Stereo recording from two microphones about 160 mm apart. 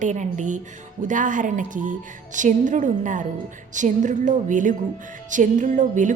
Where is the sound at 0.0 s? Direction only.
50° right (ahead or behind).